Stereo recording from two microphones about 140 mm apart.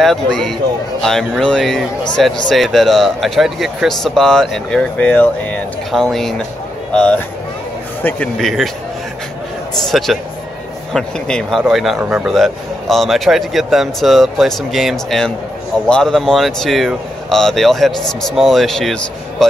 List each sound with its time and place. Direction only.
0.0 s a man's voice: centre (ahead or behind)
8.4 s a man's voice: centre (ahead or behind)
9.8 s a man's voice: centre (ahead or behind)